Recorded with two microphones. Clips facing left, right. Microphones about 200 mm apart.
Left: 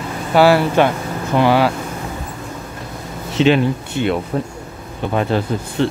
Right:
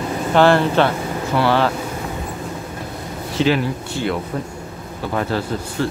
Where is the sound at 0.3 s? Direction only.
10° left (ahead or behind).